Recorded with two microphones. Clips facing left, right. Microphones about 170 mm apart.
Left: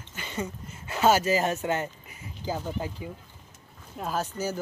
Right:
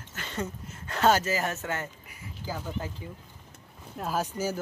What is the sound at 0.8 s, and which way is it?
Speech, 5° left (ahead or behind).